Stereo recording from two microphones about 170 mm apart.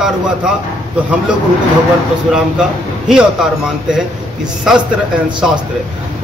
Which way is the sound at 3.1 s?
5° right (ahead or behind).